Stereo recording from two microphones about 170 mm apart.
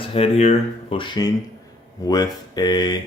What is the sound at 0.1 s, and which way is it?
Speech, 40° left (ahead or behind).